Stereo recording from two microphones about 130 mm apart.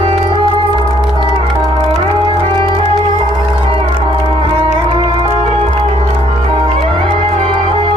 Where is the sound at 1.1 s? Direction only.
35° right (ahead or behind).